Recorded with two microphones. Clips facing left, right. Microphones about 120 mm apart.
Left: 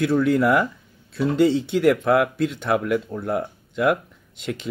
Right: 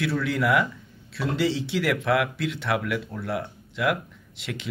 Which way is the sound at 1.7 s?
40° left (ahead or behind).